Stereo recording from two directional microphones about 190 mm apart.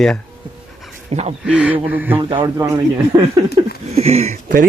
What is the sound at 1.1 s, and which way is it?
Speech, 30° right (ahead or behind).